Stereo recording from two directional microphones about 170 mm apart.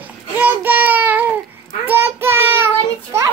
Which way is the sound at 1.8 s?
15° right (ahead or behind).